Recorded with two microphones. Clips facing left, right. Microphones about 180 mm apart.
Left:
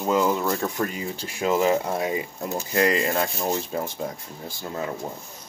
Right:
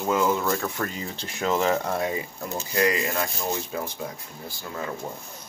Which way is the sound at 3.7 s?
40° left (ahead or behind).